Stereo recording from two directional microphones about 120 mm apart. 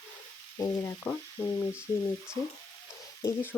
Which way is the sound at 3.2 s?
15° left (ahead or behind).